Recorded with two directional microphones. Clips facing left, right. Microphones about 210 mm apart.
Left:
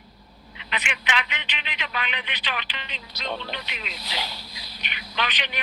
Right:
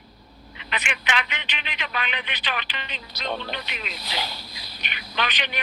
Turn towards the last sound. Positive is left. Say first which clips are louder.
# right 1 dB
turn(degrees=-50)  # may be behind; listen again after turning